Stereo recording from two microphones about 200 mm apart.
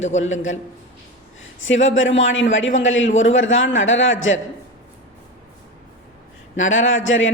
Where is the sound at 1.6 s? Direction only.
70° left (ahead or behind).